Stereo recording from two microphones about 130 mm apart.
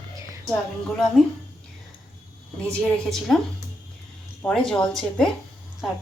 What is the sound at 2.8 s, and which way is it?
Speech, 5° left (ahead or behind).